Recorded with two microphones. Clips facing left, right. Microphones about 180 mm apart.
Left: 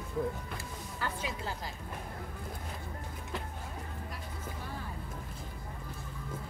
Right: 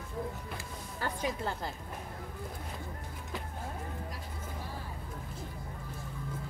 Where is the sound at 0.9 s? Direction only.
50° right (ahead or behind).